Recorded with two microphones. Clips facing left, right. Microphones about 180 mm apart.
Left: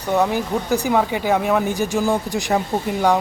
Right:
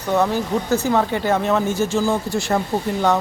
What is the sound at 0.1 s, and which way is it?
Speech, 15° left (ahead or behind).